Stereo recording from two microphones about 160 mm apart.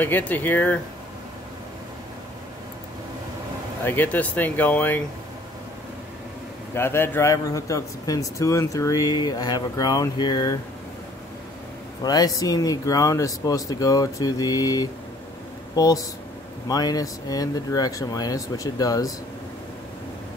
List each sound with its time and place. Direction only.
0.0 s speech: 10° left (ahead or behind)
3.8 s speech: 10° left (ahead or behind)
6.7 s speech: 15° left (ahead or behind)
12.0 s speech: 25° left (ahead or behind)